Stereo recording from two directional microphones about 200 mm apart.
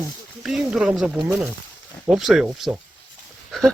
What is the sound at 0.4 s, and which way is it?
Speech, 5° right (ahead or behind).